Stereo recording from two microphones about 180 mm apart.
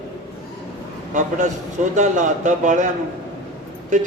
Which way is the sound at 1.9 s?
40° right (ahead or behind).